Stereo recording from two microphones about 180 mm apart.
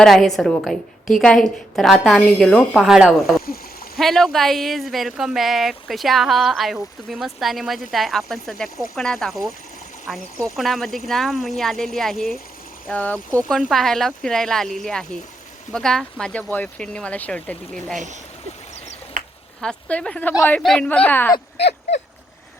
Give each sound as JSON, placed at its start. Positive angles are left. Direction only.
{"t": 0.0, "sound": "speech", "side_deg": 0}
{"t": 19.2, "sound": "a sound", "side_deg": -45}
{"t": 19.6, "sound": "speech", "side_deg": 5}
{"t": 21.3, "sound": "speech", "side_deg": 70}